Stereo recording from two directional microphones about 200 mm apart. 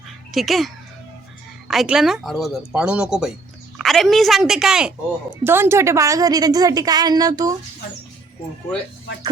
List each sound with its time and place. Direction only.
0.3 s a woman's voice: centre (ahead or behind); by 7.5 s 20° right (ahead or behind)